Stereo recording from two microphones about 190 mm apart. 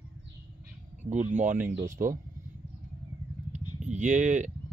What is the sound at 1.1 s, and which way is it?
Speech, 40° right (ahead or behind).